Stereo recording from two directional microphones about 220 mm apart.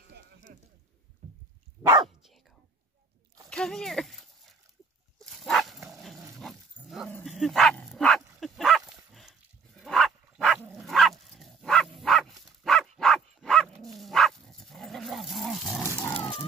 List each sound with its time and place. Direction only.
0.5 s a sound: 40° right (ahead or behind)
1.8 s speech: 15° right (ahead or behind)
3.4 s a sound: 5° left (ahead or behind)
5.2 s dog: centre (ahead or behind)
7.2 s speech: centre (ahead or behind)
8.4 s dog: centre (ahead or behind)
15.9 s dog: 15° left (ahead or behind)